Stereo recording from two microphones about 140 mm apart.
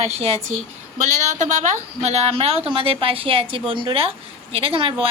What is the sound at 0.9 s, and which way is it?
A woman's voice, 60° right (ahead or behind).